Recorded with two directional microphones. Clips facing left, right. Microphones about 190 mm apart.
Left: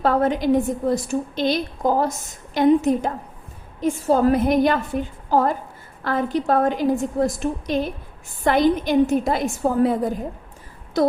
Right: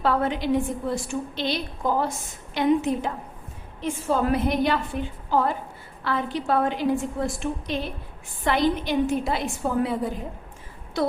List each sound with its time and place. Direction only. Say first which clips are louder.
0.0 s a woman's voice: left 5 dB; 45° left (ahead or behind)